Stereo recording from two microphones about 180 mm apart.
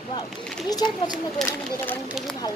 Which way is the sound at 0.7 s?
20° left (ahead or behind).